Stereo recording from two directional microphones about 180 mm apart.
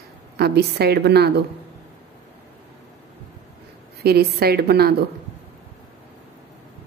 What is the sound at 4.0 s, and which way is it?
Speech, 60° right (ahead or behind).